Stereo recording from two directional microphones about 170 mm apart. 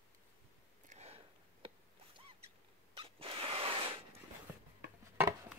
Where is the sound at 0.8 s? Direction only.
40° right (ahead or behind).